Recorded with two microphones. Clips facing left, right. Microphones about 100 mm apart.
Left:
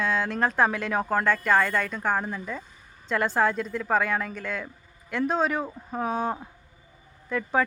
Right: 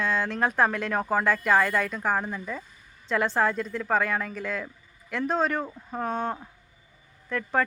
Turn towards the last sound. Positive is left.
turn(degrees=5)  # may be behind; listen again after turning